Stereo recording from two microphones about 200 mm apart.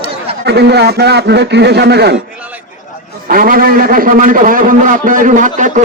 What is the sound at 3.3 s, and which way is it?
A man's voice, 45° right (ahead or behind).